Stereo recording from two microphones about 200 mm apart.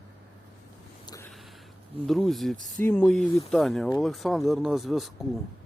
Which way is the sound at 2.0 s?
Centre (ahead or behind).